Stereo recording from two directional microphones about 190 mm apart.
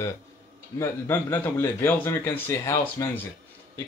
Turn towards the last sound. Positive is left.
turn(degrees=15)  # may be behind; listen again after turning